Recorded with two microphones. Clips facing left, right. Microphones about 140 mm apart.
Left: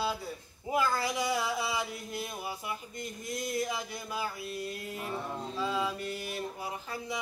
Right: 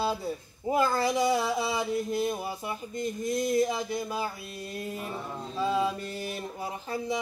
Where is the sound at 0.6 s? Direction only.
30° right (ahead or behind).